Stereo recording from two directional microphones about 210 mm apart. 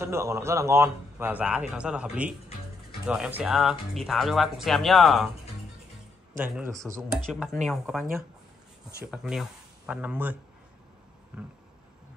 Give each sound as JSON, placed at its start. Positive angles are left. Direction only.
{"t": 0.0, "sound": "speech", "side_deg": -15}
{"t": 6.5, "sound": "speech", "side_deg": -10}
{"t": 7.2, "sound": "speech", "side_deg": 0}
{"t": 9.1, "sound": "speech", "side_deg": 0}
{"t": 11.3, "sound": "a sound", "side_deg": -5}